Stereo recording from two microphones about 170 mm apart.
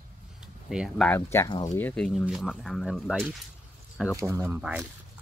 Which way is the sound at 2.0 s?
Centre (ahead or behind).